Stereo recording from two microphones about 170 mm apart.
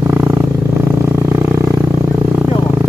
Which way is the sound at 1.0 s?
15° right (ahead or behind).